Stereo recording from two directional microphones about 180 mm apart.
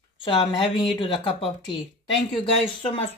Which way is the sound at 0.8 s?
30° left (ahead or behind).